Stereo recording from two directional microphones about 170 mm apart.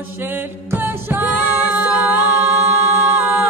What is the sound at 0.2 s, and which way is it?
Music, 15° right (ahead or behind).